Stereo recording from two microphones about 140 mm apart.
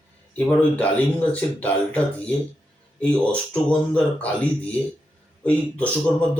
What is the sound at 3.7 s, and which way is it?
Speech, 10° left (ahead or behind).